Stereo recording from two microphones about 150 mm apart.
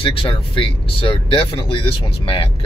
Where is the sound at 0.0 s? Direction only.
35° left (ahead or behind).